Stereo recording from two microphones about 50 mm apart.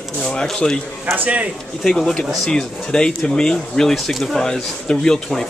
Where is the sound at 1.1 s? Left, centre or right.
Right.